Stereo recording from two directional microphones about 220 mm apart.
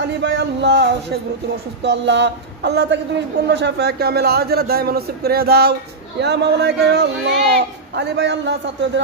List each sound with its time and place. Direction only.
0.2 s speech: 55° right (ahead or behind)